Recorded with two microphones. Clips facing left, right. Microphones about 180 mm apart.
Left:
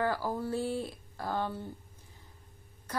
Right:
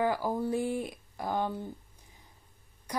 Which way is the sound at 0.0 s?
15° right (ahead or behind).